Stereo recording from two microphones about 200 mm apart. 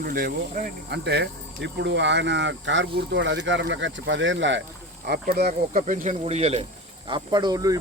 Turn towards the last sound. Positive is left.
turn(degrees=-15)  # may be behind; listen again after turning